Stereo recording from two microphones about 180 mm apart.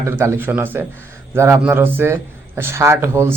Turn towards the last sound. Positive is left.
turn(degrees=-15)  # may be behind; listen again after turning